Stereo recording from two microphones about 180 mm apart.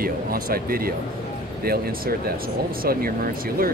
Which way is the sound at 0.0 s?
55° right (ahead or behind).